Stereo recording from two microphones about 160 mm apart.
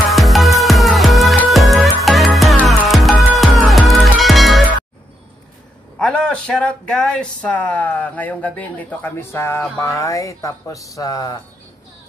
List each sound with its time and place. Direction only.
0.1 s music: centre (ahead or behind)
5.9 s speech: 5° left (ahead or behind); by 11.3 s 20° left (ahead or behind)